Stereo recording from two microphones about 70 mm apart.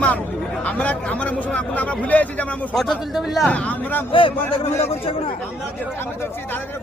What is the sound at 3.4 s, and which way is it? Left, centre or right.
Speech, centre.